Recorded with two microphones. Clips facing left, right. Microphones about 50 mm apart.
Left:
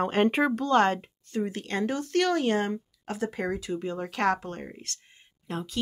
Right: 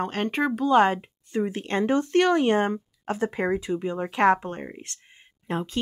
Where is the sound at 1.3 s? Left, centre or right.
Right.